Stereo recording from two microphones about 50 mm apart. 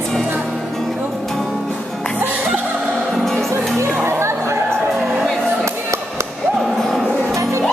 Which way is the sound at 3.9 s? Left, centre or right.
Right.